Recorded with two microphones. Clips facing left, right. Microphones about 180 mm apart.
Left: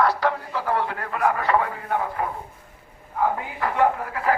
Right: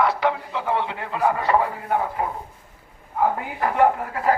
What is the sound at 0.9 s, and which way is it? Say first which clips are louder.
A man's voice: right 1 dB; 25° right (ahead or behind).